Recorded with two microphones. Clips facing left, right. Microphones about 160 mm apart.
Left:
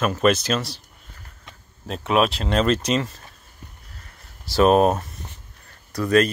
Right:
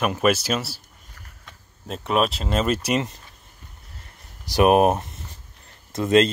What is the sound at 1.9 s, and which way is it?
Speech, centre (ahead or behind).